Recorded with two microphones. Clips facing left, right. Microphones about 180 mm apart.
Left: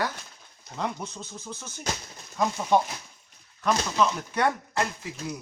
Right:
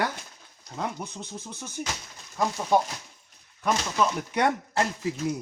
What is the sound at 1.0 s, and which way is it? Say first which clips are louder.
Speech: even; 10° right (ahead or behind).